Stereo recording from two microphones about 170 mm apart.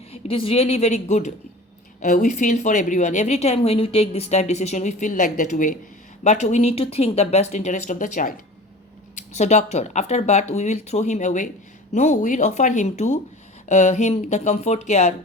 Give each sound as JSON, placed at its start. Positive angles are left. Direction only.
{"t": 0.1, "sound": "a woman's voice", "side_deg": 35}